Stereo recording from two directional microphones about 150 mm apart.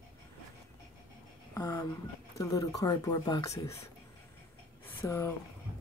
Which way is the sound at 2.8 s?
25° left (ahead or behind).